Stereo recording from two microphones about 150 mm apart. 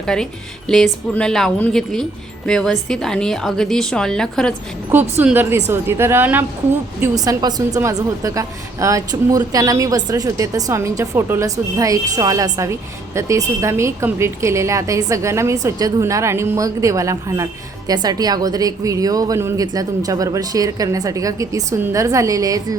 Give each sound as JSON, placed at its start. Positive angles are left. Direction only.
{"t": 0.0, "sound": "a woman's voice", "side_deg": 5}
{"t": 5.2, "sound": "a woman's voice", "side_deg": -15}
{"t": 7.0, "sound": "a woman's voice", "side_deg": -25}